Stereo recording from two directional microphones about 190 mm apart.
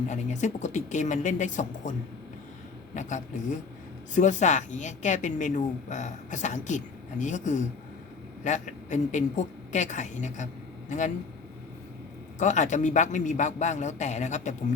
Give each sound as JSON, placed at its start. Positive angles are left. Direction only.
{"t": 0.1, "sound": "a woman's voice", "side_deg": 40}
{"t": 2.9, "sound": "a woman's voice", "side_deg": 40}
{"t": 12.4, "sound": "a woman's voice", "side_deg": 40}